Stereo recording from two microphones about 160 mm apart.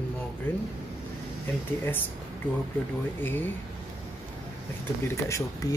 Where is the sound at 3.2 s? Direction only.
10° left (ahead or behind).